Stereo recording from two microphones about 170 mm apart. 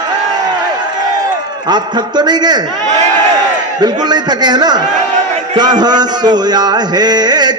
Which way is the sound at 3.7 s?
25° right (ahead or behind).